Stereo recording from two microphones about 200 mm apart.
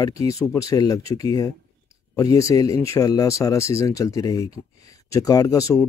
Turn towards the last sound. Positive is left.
turn(degrees=15)  # may be behind; listen again after turning